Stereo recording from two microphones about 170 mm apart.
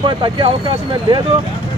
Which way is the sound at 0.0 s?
30° right (ahead or behind).